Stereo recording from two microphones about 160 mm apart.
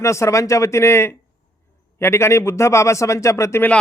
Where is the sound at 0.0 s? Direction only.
20° left (ahead or behind).